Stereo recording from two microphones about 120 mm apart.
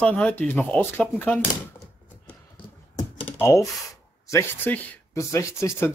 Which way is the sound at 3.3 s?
20° left (ahead or behind).